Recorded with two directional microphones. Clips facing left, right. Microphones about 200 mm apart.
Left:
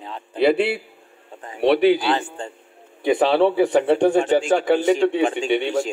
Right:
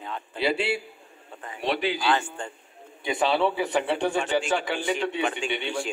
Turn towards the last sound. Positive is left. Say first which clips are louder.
# left 9 dB
turn(degrees=45)  # may be behind; listen again after turning